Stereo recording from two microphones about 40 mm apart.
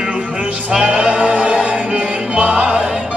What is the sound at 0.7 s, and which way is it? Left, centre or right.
Music, right.